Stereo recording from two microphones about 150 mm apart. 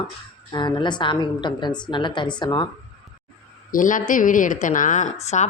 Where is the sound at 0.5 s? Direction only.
30° left (ahead or behind).